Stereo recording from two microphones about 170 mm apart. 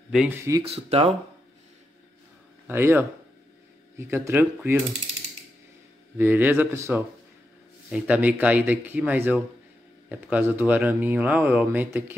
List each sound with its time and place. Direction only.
0.3 s speech: 15° right (ahead or behind)
0.7 s speech: 35° right (ahead or behind)
2.6 s a man's voice: 10° right (ahead or behind)
6.1 s speech: 10° right (ahead or behind)